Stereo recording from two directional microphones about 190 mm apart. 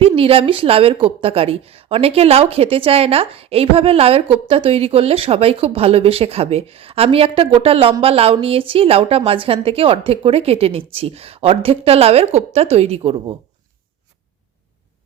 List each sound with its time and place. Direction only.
0.2 s a woman's voice: 30° right (ahead or behind)